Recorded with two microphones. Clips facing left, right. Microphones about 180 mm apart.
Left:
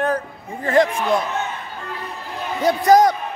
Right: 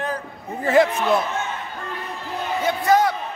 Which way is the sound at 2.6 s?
40° left (ahead or behind).